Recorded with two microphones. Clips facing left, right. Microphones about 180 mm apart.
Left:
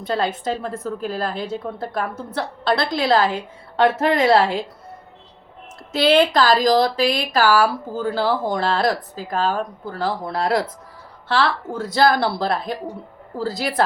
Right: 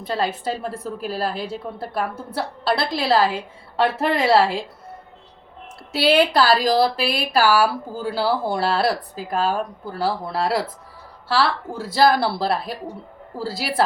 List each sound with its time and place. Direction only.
0.0 s speech: 5° right (ahead or behind)
5.9 s speech: 10° right (ahead or behind)
11.9 s speech: 5° right (ahead or behind)